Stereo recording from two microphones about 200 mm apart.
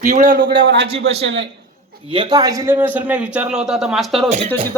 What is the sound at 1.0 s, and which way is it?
Speech, 65° right (ahead or behind).